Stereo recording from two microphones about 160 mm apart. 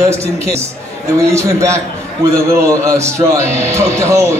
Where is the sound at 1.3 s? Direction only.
15° right (ahead or behind).